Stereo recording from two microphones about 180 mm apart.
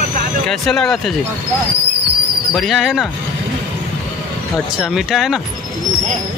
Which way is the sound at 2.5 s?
Centre (ahead or behind).